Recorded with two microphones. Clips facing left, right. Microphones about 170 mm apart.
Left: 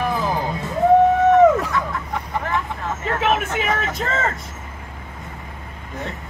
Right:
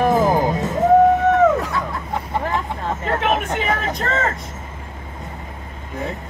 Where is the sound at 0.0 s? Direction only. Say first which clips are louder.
Right 6 dB; 45° right (ahead or behind).